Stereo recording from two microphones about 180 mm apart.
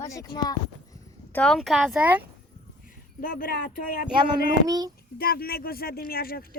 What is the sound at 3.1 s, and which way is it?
Speech, 50° left (ahead or behind).